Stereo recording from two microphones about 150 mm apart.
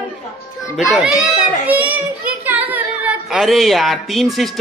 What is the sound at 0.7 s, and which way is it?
A child's voice, 5° right (ahead or behind).